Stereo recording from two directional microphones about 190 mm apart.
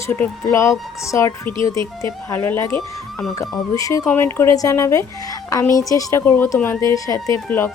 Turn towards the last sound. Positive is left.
turn(degrees=15)  # may be behind; listen again after turning